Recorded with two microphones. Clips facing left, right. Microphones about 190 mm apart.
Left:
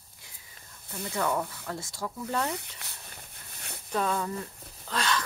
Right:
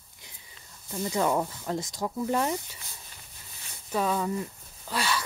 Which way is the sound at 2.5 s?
65° left (ahead or behind).